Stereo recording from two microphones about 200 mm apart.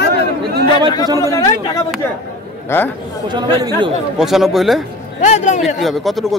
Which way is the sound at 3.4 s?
20° right (ahead or behind).